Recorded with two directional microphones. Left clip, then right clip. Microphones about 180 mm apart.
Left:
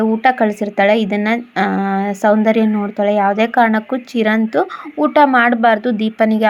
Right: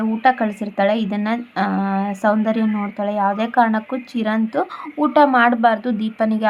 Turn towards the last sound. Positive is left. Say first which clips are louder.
# left 6 dB
turn(degrees=20)  # may be behind; listen again after turning